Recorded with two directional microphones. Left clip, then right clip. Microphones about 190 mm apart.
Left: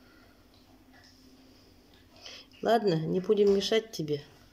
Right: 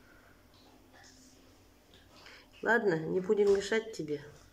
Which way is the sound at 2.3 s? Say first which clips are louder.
Left 3 dB; 10° left (ahead or behind).